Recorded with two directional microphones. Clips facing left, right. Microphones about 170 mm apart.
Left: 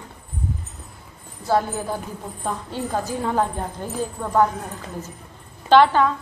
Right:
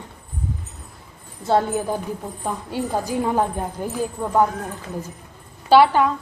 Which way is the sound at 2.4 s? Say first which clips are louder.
Even; 10° right (ahead or behind).